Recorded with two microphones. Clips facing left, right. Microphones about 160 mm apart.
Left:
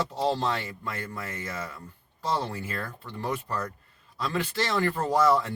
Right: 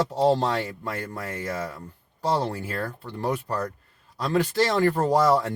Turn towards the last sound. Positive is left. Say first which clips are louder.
# right 3 dB
turn(degrees=-40)  # may be behind; listen again after turning